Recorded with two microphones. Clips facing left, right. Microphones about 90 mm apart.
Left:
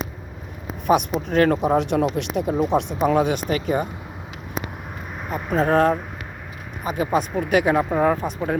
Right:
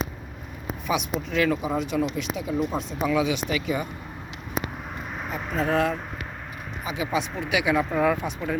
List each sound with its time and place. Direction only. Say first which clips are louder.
0.9 s speech: left 8 dB; 50° left (ahead or behind)
5.5 s speech: left 6 dB; 40° left (ahead or behind)
7.9 s speech: left 3 dB; 30° left (ahead or behind)